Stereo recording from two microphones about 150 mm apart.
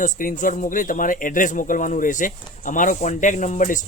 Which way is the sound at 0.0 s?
60° left (ahead or behind).